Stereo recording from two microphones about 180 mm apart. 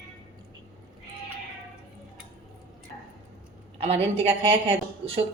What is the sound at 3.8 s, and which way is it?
A woman's voice, 35° right (ahead or behind).